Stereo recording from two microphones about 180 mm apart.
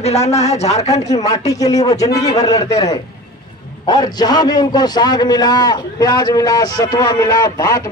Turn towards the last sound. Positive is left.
turn(degrees=15)  # may be behind; listen again after turning